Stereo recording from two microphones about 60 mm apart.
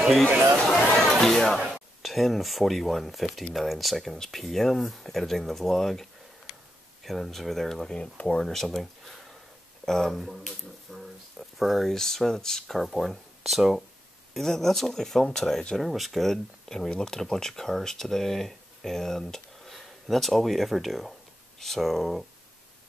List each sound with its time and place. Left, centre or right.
0.3 s chatter: right
0.7 s chatter: centre
2.0 s speech: centre